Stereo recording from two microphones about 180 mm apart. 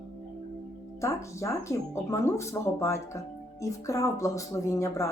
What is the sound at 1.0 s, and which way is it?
Speech, 15° left (ahead or behind).